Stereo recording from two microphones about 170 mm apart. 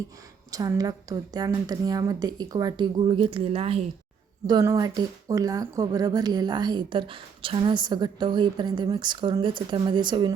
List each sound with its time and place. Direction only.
0.5 s speech: 20° right (ahead or behind)
4.4 s speech: 20° right (ahead or behind)